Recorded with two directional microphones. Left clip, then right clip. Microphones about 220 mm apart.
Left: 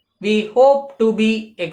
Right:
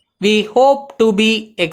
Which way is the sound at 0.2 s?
50° right (ahead or behind).